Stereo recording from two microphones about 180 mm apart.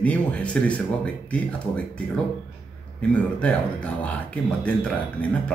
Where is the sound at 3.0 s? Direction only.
5° left (ahead or behind).